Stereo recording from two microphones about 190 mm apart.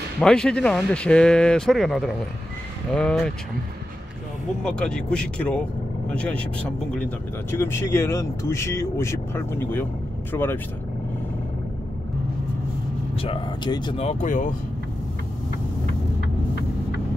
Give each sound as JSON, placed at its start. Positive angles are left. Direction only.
{"t": 0.2, "sound": "speech", "side_deg": 5}
{"t": 4.6, "sound": "speech", "side_deg": 5}
{"t": 13.2, "sound": "speech", "side_deg": 25}